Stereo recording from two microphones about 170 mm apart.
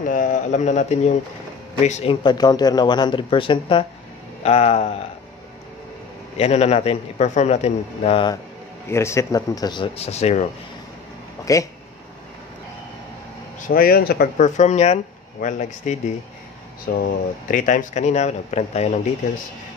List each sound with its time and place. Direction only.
0.0 s speech: 50° left (ahead or behind)
2.2 s a man's voice: 25° left (ahead or behind)
6.3 s a man's voice: 40° left (ahead or behind)
8.9 s speech: 15° left (ahead or behind)
9.9 s a man's voice: 40° left (ahead or behind)
11.5 s speech: 20° left (ahead or behind)
13.6 s speech: 55° left (ahead or behind)
16.9 s speech: 60° left (ahead or behind); by 18.9 s 40° left (ahead or behind)